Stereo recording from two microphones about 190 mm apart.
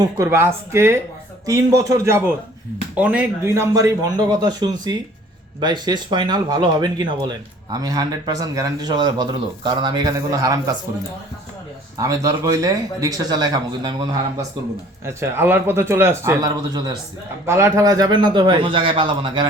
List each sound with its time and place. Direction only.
0.0 s speech: 15° right (ahead or behind)
11.9 s speech: 15° right (ahead or behind)